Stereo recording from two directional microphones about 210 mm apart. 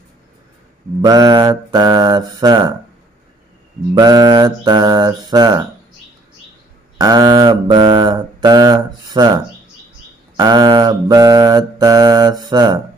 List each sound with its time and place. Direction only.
1.0 s mantra: 20° right (ahead or behind)
3.9 s mantra: 20° right (ahead or behind)
7.0 s mantra: 20° right (ahead or behind)